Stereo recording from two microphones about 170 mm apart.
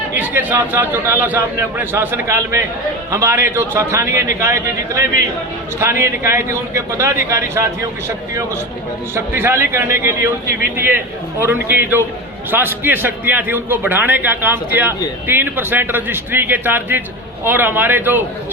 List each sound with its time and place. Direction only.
0.1 s a man's voice: 10° right (ahead or behind)
9.1 s a man's voice: 15° right (ahead or behind)